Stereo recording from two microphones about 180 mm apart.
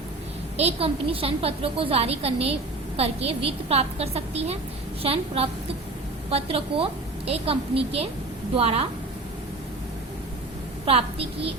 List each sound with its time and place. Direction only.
0.5 s a woman's voice: 35° right (ahead or behind)
10.8 s a woman's voice: 30° right (ahead or behind)